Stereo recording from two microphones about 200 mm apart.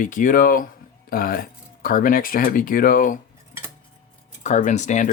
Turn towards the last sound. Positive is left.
turn(degrees=35)  # may be behind; listen again after turning